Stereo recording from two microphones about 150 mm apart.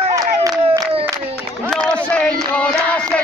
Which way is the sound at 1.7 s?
5° left (ahead or behind).